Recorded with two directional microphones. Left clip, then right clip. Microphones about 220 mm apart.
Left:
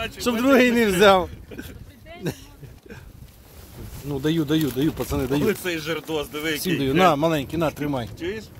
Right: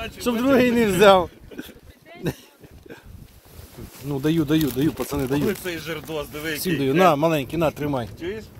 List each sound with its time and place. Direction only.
0.2 s speech: centre (ahead or behind)
4.1 s speech: 15° right (ahead or behind)
5.4 s speech: 35° left (ahead or behind)
6.8 s speech: 10° right (ahead or behind)